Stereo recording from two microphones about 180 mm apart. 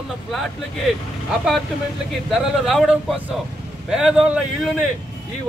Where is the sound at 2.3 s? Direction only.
Centre (ahead or behind).